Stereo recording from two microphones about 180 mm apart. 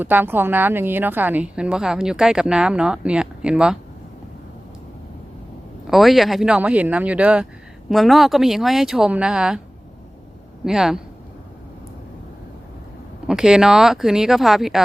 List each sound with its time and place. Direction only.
0.0 s a woman's voice: 10° right (ahead or behind)
5.9 s a woman's voice: centre (ahead or behind)
10.6 s a woman's voice: centre (ahead or behind)
13.2 s a woman's voice: 5° right (ahead or behind)